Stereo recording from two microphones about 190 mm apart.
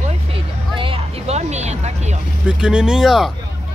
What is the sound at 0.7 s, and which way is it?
Speech, 30° right (ahead or behind).